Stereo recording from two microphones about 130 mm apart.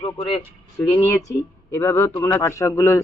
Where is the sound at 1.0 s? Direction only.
20° left (ahead or behind).